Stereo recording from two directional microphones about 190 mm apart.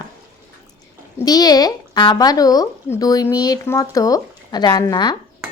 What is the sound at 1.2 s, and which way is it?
Speech, 20° left (ahead or behind).